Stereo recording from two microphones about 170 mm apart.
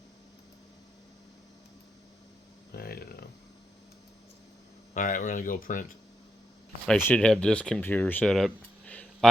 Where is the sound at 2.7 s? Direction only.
65° left (ahead or behind).